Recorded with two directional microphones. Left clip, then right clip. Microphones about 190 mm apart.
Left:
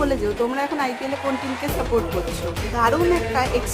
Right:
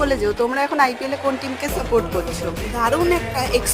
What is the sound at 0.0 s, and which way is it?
Speech, 30° right (ahead or behind).